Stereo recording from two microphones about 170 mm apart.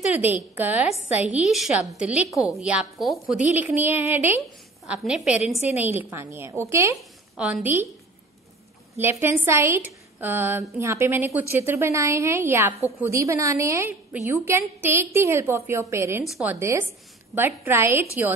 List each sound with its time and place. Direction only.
0.1 s a woman's voice: 10° right (ahead or behind)
7.0 s a woman's voice: 5° right (ahead or behind)
8.9 s a woman's voice: 15° right (ahead or behind)
16.3 s a woman's voice: 5° right (ahead or behind)
16.5 s a woman's voice: 15° right (ahead or behind)